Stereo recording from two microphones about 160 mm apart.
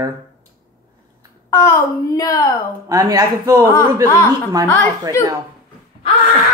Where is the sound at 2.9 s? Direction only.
20° right (ahead or behind).